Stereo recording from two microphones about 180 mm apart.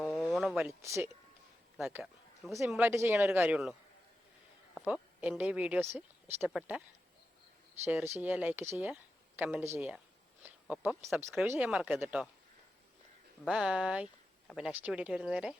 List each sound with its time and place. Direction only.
0.2 s a sound: 5° right (ahead or behind)
0.7 s speech: 15° right (ahead or behind)
1.8 s speech: centre (ahead or behind)
7.9 s speech: 10° right (ahead or behind)
10.4 s a sound: 10° right (ahead or behind)
11.4 s speech: 10° right (ahead or behind)
13.4 s speech: centre (ahead or behind)